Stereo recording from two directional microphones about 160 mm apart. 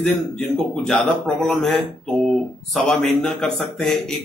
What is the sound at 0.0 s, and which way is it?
A man's voice, 5° left (ahead or behind).